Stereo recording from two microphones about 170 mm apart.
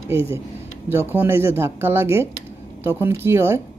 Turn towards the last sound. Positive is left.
turn(degrees=-15)  # may be behind; listen again after turning